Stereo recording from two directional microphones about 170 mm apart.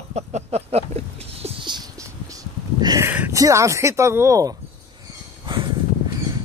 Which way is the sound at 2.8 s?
25° right (ahead or behind).